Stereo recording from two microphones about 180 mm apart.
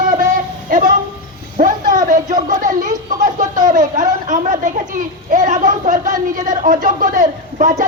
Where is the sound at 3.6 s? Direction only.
45° right (ahead or behind).